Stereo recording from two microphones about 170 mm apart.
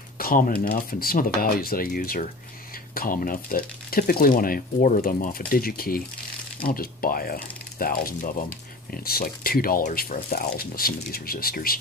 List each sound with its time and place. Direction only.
0.2 s speech: 60° left (ahead or behind)